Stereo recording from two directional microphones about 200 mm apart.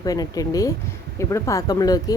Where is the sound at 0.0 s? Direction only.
20° left (ahead or behind).